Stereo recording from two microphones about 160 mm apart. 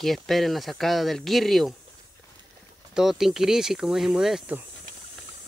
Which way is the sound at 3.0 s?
Centre (ahead or behind).